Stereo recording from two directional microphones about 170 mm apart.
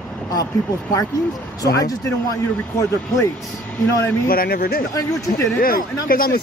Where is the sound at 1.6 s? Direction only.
20° left (ahead or behind).